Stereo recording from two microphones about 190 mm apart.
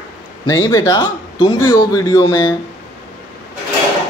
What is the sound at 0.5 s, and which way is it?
Speech, 20° left (ahead or behind).